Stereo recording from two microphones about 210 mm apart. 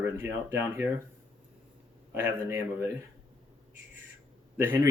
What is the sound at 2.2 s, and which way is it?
Speech, 10° right (ahead or behind).